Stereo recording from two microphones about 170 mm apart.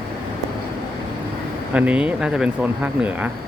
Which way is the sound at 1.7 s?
10° right (ahead or behind).